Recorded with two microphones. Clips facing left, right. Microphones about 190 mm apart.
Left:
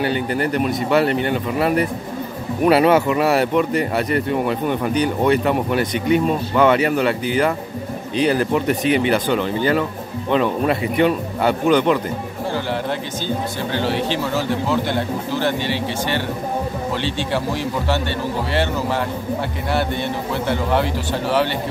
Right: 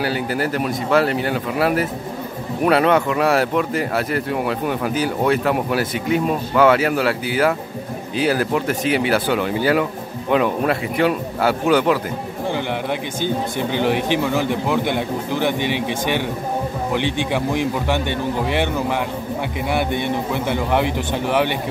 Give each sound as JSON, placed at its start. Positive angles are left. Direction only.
{"t": 0.0, "sound": "speech", "side_deg": -5}
{"t": 13.6, "sound": "speech", "side_deg": -15}
{"t": 19.7, "sound": "speech", "side_deg": -15}